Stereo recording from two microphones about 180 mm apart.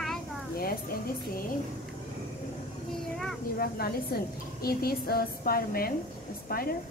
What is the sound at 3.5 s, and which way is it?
A woman's voice, 55° left (ahead or behind).